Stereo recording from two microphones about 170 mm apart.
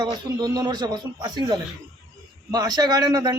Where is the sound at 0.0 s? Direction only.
25° right (ahead or behind).